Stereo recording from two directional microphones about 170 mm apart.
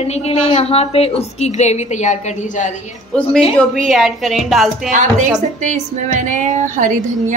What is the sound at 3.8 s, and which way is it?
A man's voice, centre (ahead or behind).